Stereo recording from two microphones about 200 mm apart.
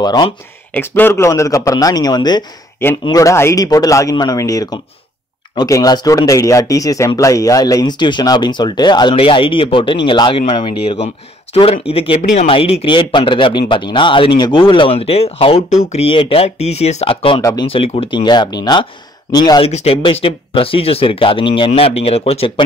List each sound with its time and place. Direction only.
0.0 s speech: 20° left (ahead or behind)
0.7 s speech: 10° left (ahead or behind)
19.7 s speech: 30° left (ahead or behind)